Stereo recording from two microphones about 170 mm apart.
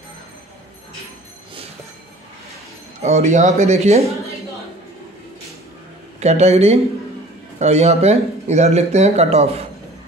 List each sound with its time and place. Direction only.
3.0 s speech: 40° right (ahead or behind)
6.1 s speech: 40° right (ahead or behind)